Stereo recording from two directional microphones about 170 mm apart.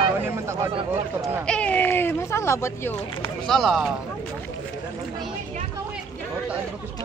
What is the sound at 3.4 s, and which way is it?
Speech, centre (ahead or behind).